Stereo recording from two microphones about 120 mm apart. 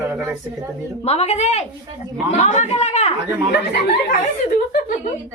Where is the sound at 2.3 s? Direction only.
80° left; by 3.1 s 65° left (ahead or behind).